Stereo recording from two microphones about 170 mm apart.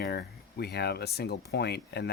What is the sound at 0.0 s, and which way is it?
Speech, 70° left (ahead or behind).